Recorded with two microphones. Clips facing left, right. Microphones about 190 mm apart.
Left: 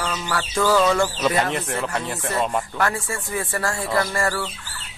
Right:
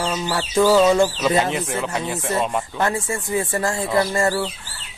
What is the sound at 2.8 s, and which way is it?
Speech, 20° right (ahead or behind).